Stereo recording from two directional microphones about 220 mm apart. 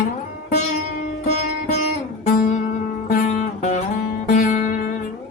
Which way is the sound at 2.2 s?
35° left (ahead or behind).